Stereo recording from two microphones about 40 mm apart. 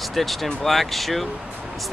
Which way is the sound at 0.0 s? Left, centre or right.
Centre.